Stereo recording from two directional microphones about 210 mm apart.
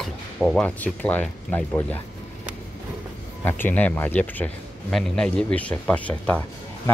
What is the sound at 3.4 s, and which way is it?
Speech, 10° left (ahead or behind).